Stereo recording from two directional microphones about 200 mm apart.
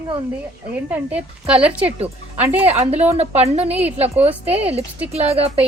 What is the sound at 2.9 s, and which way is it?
Speech, 30° right (ahead or behind).